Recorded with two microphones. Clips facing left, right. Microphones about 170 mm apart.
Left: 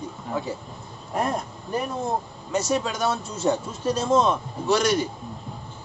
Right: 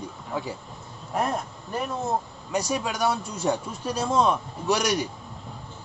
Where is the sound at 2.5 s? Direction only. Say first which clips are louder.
Left 3 dB; 15° right (ahead or behind).